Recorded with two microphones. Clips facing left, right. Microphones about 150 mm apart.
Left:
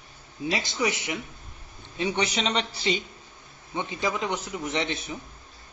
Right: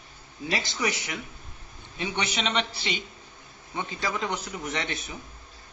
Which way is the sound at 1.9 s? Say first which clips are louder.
Left 4 dB; 30° left (ahead or behind).